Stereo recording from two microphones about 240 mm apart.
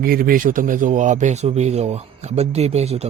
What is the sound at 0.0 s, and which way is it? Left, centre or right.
A man's voice, right.